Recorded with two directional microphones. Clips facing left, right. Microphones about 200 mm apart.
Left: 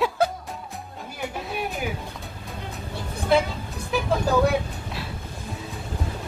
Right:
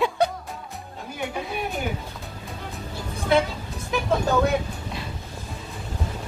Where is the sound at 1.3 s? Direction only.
Centre (ahead or behind).